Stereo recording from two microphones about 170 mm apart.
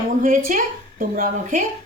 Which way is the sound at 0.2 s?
50° right (ahead or behind).